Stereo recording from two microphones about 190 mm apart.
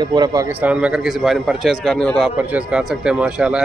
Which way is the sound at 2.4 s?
5° right (ahead or behind).